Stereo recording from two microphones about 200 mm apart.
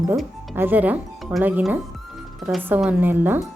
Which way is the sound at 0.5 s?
10° right (ahead or behind).